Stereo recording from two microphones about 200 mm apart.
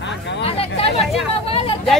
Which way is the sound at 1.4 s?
30° left (ahead or behind).